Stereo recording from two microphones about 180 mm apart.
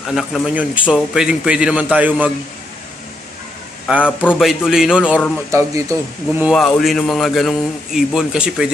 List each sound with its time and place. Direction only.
0.1 s a man's voice: centre (ahead or behind)
3.8 s a man's voice: 5° right (ahead or behind)
5.5 s a man's voice: 15° right (ahead or behind)
6.4 s a man's voice: centre (ahead or behind)